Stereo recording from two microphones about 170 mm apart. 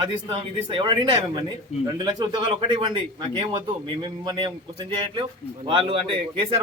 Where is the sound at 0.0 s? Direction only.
30° right (ahead or behind).